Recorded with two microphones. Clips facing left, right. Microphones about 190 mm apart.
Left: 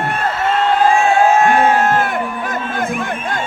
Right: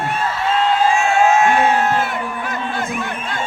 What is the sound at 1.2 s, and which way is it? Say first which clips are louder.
Music: right 1 dB; 35° left (ahead or behind).